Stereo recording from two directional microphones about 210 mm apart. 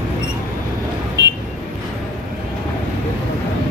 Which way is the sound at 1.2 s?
55° right (ahead or behind).